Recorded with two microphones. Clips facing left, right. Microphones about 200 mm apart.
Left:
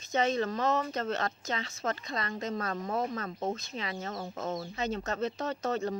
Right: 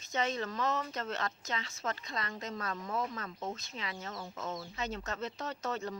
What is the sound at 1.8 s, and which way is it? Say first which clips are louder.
Speech: left 5 dB; 50° left (ahead or behind).